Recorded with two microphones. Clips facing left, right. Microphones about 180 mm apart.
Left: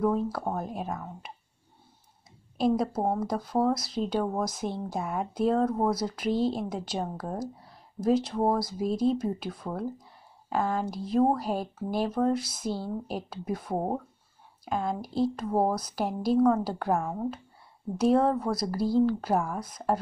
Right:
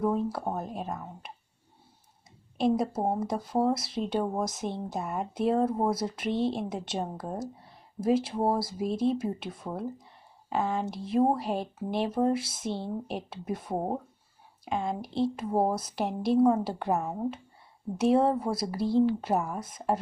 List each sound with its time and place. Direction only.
0.0 s speech: 5° right (ahead or behind)
2.8 s speech: 5° right (ahead or behind)
12.6 s speech: 25° right (ahead or behind)
13.0 s speech: centre (ahead or behind)
14.8 s speech: centre (ahead or behind)
18.8 s speech: 25° right (ahead or behind)
19.0 s speech: 5° right (ahead or behind)